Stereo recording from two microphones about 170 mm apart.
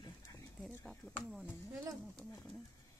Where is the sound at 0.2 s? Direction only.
20° left (ahead or behind).